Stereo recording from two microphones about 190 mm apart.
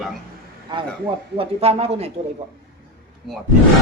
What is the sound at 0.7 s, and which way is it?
Speech, 25° right (ahead or behind).